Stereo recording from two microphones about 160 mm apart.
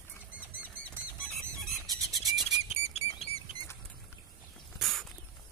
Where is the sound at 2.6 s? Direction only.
40° left (ahead or behind).